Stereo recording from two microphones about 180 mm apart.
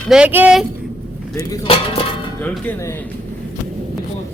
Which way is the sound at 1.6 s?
30° left (ahead or behind).